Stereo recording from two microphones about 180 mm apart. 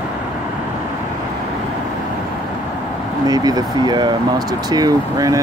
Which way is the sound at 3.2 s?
20° right (ahead or behind).